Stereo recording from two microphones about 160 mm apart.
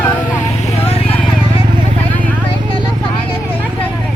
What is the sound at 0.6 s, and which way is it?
Vehicle, 35° left (ahead or behind).